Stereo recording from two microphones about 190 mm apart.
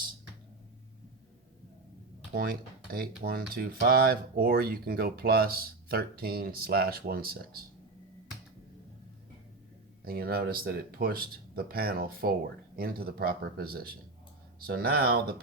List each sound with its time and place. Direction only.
2.3 s speech: 50° right (ahead or behind)
10.0 s speech: 50° right (ahead or behind)